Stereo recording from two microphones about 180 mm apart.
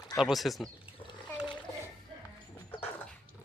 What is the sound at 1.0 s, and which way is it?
Splash, 25° left (ahead or behind).